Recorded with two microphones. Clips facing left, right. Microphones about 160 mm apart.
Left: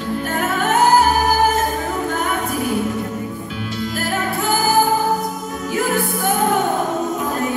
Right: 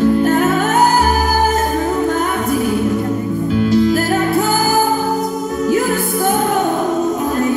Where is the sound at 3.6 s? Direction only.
40° right (ahead or behind).